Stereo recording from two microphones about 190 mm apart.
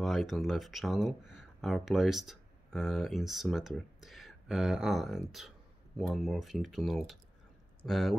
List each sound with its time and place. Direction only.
0.0 s speech: centre (ahead or behind)